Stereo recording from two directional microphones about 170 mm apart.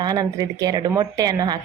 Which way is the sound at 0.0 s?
25° right (ahead or behind).